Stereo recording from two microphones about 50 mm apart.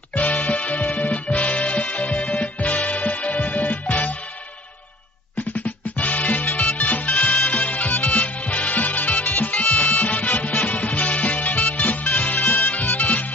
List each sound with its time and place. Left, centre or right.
0.1 s music: left
5.9 s music: left